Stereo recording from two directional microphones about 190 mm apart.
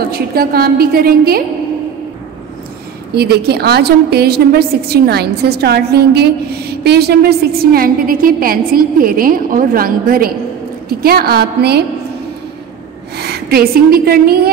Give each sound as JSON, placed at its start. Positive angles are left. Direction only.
{"t": 0.1, "sound": "a woman's voice", "side_deg": -55}
{"t": 3.2, "sound": "a woman's voice", "side_deg": -55}
{"t": 13.2, "sound": "a woman's voice", "side_deg": -55}